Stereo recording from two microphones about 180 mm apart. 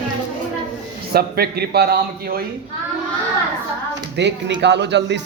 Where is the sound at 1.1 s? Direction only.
60° right (ahead or behind).